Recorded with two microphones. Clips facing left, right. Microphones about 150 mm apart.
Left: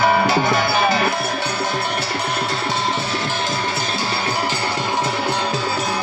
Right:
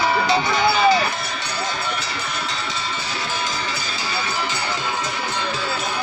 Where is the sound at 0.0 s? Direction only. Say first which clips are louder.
Left 3 dB; 55° left (ahead or behind).